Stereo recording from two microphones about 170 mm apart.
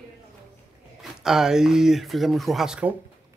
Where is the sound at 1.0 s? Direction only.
5° right (ahead or behind).